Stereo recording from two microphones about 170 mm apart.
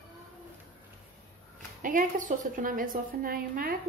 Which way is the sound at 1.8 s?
50° right (ahead or behind).